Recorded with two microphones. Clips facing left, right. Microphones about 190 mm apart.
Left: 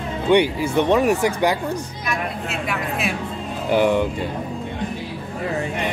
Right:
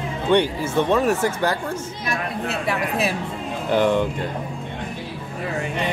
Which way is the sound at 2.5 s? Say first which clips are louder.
Right 4 dB; 35° right (ahead or behind).